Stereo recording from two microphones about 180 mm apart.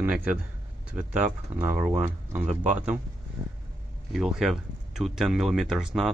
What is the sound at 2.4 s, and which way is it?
Speech, 40° right (ahead or behind).